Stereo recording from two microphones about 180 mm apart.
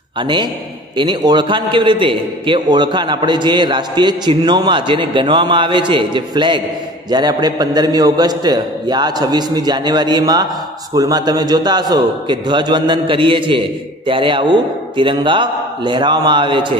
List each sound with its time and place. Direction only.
0.2 s a man's voice: 25° right (ahead or behind)